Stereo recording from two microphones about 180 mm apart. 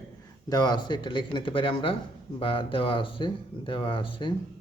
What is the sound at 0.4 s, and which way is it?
Speech, 20° left (ahead or behind).